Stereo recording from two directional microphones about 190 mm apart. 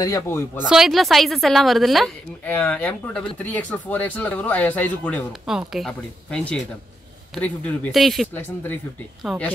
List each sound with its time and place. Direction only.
0.0 s speech: 20° left (ahead or behind)
0.7 s a woman's voice: centre (ahead or behind)
5.5 s a woman's voice: 5° right (ahead or behind)
9.3 s a woman's voice: centre (ahead or behind)